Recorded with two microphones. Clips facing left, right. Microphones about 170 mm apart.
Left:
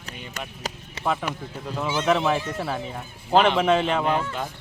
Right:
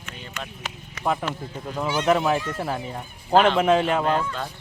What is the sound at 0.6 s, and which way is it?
Clip-clop, 40° left (ahead or behind).